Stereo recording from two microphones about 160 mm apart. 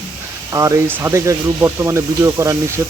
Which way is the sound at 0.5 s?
20° right (ahead or behind).